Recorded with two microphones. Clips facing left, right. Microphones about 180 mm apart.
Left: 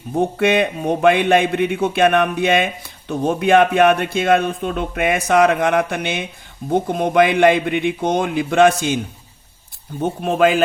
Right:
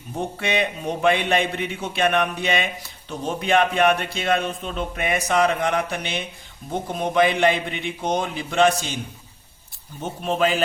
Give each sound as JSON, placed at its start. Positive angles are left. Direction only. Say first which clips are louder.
{"t": 0.2, "sound": "a man's voice", "louder": "left 8 dB", "side_deg": 55}
{"t": 10.0, "sound": "a man's voice", "louder": "left 6 dB", "side_deg": 55}